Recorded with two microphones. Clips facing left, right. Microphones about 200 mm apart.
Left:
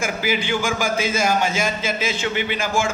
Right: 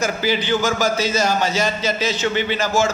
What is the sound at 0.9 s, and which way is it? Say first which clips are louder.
Speech: right 2 dB; 40° right (ahead or behind).